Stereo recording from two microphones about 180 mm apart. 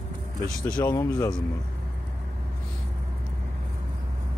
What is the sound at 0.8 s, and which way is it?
Speech, 20° left (ahead or behind).